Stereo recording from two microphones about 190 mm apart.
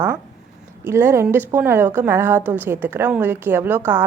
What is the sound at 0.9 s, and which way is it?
A woman's voice, 15° right (ahead or behind).